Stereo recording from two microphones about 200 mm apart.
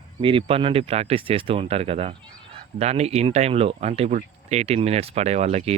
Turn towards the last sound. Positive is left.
turn(degrees=-35)  # may be behind; listen again after turning